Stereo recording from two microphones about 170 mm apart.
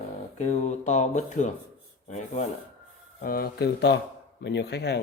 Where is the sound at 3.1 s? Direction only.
60° left (ahead or behind); by 5.0 s 80° left.